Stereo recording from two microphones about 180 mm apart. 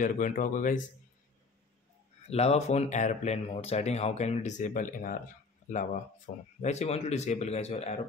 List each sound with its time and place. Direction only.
0.0 s speech: 45° left (ahead or behind)
2.2 s speech: 35° left (ahead or behind)